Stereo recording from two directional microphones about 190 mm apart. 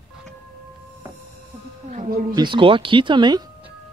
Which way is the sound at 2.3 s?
25° right (ahead or behind).